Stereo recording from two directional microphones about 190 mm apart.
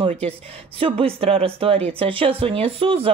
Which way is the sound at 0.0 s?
30° right (ahead or behind).